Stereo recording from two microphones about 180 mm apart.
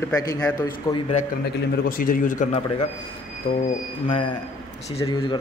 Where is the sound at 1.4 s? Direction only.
55° left (ahead or behind).